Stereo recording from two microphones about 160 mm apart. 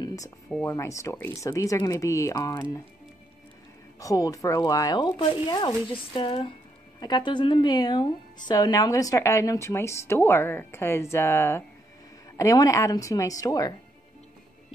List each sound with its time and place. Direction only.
0.0 s a sound: 20° left (ahead or behind)
0.7 s speech: 20° left (ahead or behind)
4.0 s a woman's voice: 20° left (ahead or behind)